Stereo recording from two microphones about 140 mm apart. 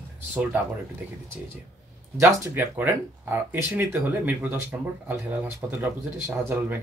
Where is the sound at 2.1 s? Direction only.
20° right (ahead or behind).